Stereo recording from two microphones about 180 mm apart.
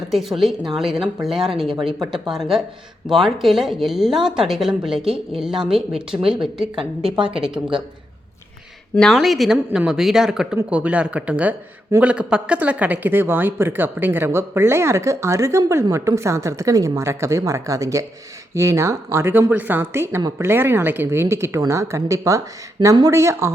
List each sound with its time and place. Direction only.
0.1 s a woman's voice: centre (ahead or behind)
1.7 s speech: 25° right (ahead or behind)
2.3 s a woman's voice: centre (ahead or behind)
9.0 s a woman's voice: centre (ahead or behind)